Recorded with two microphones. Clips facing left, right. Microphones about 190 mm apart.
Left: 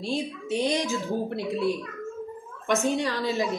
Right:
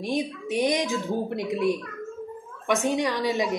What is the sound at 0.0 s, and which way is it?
A woman's voice, 15° right (ahead or behind).